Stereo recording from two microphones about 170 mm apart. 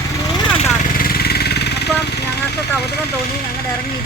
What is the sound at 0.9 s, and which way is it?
Vehicle, 60° left (ahead or behind).